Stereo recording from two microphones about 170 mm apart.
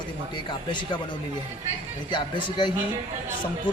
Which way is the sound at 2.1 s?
25° left (ahead or behind).